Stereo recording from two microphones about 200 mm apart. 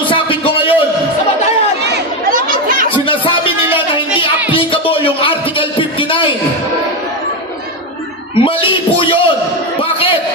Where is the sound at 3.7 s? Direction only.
25° left (ahead or behind).